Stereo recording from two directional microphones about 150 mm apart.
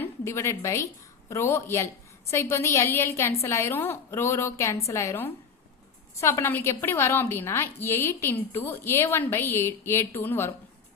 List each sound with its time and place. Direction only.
0.0 s a woman's voice: 20° left (ahead or behind)